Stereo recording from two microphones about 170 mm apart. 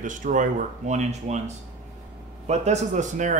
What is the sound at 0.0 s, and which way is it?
A man's voice, 50° right (ahead or behind).